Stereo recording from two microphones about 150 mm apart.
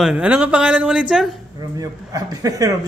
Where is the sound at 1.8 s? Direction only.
25° right (ahead or behind).